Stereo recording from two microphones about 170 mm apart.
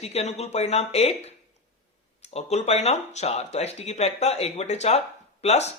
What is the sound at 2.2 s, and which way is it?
Speech, 40° left (ahead or behind).